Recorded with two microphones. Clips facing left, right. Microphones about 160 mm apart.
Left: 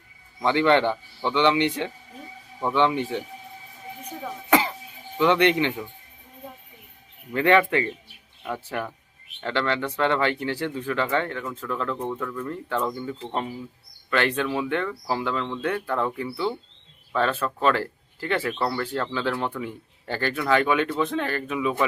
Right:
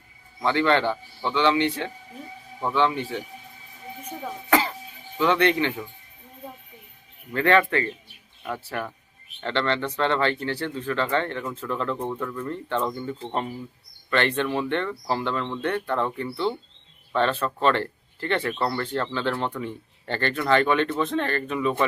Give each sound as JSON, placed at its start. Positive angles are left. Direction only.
{"t": 0.4, "sound": "speech", "side_deg": 15}
{"t": 4.4, "sound": "music", "side_deg": 15}
{"t": 5.2, "sound": "speech", "side_deg": 20}
{"t": 7.3, "sound": "speech", "side_deg": 15}
{"t": 12.5, "sound": "speech", "side_deg": 5}